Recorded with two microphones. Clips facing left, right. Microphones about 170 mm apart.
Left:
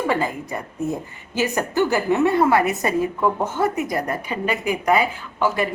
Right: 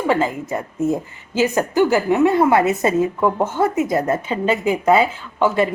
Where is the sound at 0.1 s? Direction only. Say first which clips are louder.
Right 4 dB; 20° right (ahead or behind).